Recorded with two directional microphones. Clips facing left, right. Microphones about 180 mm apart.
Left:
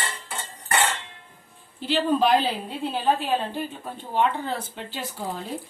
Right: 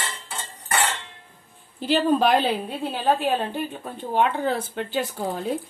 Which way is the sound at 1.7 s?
45° right (ahead or behind).